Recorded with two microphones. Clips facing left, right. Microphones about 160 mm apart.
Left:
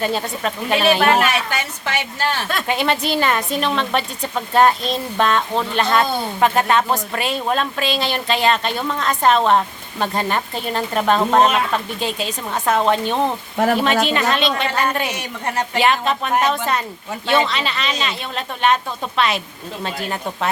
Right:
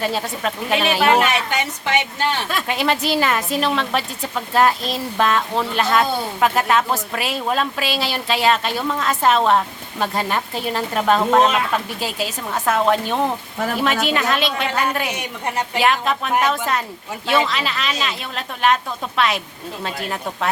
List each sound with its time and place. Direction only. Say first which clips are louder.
0.0 s a woman's voice: left 1 dB; centre (ahead or behind)
1.2 s a woman's voice: even; 20° right (ahead or behind)
2.6 s a woman's voice: left 1 dB; centre (ahead or behind)